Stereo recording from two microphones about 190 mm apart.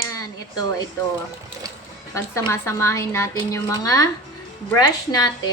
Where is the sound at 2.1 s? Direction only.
15° left (ahead or behind).